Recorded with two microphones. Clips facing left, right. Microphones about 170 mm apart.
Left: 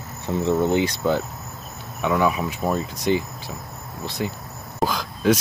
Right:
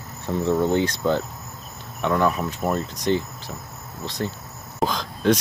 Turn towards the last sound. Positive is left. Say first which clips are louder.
# left 1 dB
turn(degrees=5)  # may be behind; listen again after turning